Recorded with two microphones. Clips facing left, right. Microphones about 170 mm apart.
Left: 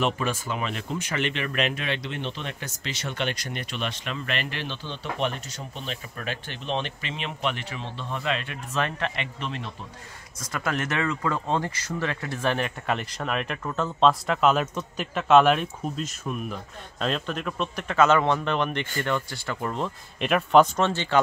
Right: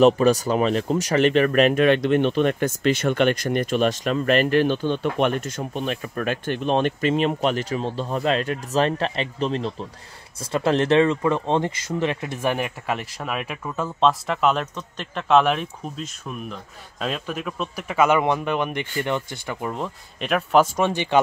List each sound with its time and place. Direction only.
0.0 s speech: 40° right (ahead or behind); by 21.2 s 15° right (ahead or behind)